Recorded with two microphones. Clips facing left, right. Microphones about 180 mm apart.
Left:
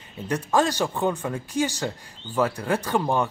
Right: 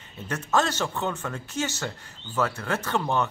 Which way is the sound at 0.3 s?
10° left (ahead or behind).